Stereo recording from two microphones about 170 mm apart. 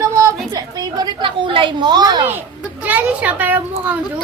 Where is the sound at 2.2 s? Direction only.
10° right (ahead or behind).